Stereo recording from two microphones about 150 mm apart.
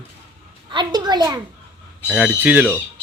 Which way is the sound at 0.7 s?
30° right (ahead or behind).